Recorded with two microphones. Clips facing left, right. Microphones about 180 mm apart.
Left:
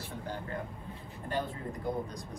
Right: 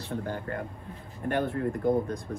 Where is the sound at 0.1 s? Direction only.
60° right (ahead or behind).